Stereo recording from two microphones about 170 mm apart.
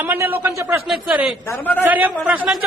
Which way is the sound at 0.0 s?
10° right (ahead or behind).